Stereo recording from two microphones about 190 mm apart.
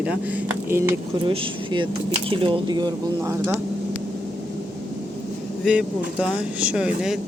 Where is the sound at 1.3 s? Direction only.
25° right (ahead or behind).